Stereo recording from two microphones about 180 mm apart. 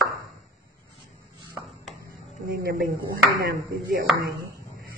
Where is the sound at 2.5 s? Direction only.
55° right (ahead or behind).